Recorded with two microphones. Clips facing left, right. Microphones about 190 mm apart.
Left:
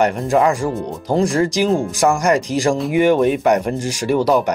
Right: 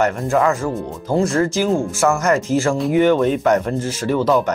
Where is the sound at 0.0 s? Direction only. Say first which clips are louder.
Left 2 dB; 15° left (ahead or behind).